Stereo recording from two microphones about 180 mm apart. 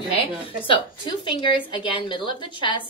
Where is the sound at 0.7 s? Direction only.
25° left (ahead or behind).